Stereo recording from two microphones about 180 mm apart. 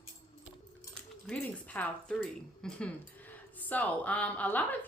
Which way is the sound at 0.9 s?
5° left (ahead or behind).